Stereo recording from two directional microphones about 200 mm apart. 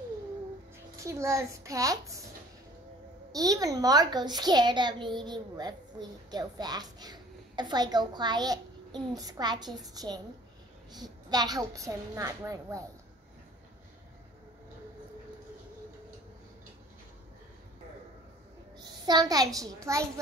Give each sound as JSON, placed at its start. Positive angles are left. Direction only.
{"t": 1.0, "sound": "a woman's voice", "side_deg": -15}
{"t": 3.3, "sound": "a child's voice", "side_deg": -15}
{"t": 18.8, "sound": "a sound", "side_deg": -20}
{"t": 19.6, "sound": "a woman's voice", "side_deg": -15}